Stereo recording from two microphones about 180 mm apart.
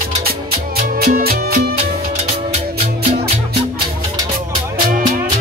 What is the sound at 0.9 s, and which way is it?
Music, 55° right (ahead or behind).